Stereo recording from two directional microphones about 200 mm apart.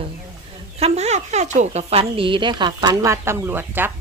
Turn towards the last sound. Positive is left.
turn(degrees=-10)  # may be behind; listen again after turning